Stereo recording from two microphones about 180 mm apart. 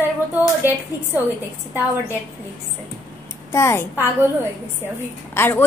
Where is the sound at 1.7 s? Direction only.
10° right (ahead or behind).